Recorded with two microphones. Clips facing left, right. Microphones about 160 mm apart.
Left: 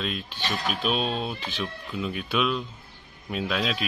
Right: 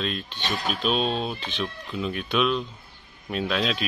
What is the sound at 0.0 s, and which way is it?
Speech, 5° left (ahead or behind).